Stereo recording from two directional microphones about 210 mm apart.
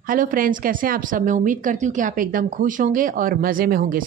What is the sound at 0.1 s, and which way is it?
A woman's voice, 40° right (ahead or behind).